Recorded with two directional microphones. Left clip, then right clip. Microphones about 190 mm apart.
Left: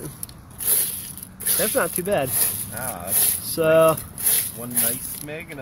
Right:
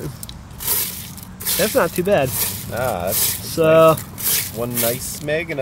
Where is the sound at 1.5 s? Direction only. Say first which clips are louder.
Right 6 dB; centre (ahead or behind).